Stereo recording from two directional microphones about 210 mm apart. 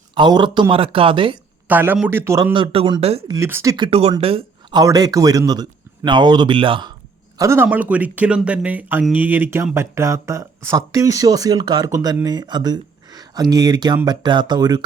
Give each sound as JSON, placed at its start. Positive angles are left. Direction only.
{"t": 0.1, "sound": "speech", "side_deg": -20}
{"t": 1.6, "sound": "speech", "side_deg": -10}
{"t": 3.2, "sound": "speech", "side_deg": -15}
{"t": 3.8, "sound": "speech", "side_deg": -25}
{"t": 7.3, "sound": "speech", "side_deg": -15}